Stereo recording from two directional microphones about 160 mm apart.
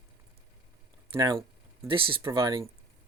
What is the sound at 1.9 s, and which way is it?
Speech, 30° right (ahead or behind).